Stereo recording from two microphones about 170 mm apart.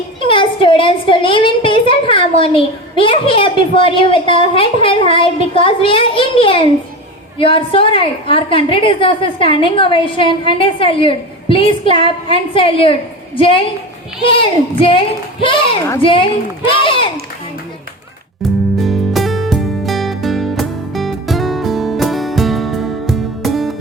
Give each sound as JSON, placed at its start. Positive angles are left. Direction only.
{"t": 0.2, "sound": "a woman's voice", "side_deg": 30}
{"t": 18.8, "sound": "music", "side_deg": 0}